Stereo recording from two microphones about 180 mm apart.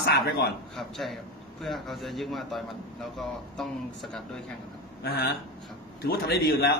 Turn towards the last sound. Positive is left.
turn(degrees=60)  # may be behind; listen again after turning